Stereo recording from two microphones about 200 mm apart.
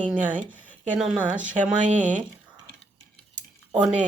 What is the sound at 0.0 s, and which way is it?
Speech, 5° right (ahead or behind).